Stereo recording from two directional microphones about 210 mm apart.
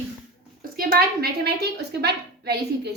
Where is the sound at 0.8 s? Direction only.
45° right (ahead or behind).